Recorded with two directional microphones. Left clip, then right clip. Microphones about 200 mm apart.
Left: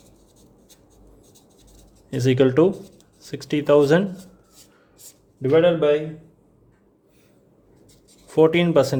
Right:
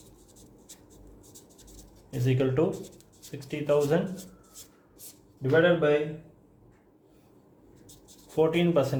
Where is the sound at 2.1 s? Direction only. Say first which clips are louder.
Left 10 dB; 60° left (ahead or behind).